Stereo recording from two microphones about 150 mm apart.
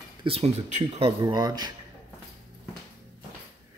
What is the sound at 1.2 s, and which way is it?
Speech, 25° right (ahead or behind).